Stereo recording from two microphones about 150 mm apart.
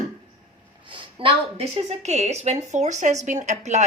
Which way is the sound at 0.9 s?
35° right (ahead or behind).